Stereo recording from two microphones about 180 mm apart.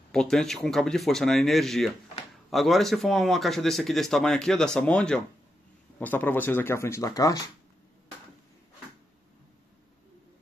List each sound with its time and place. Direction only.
0.1 s speech: 5° left (ahead or behind); by 7.5 s 20° left (ahead or behind)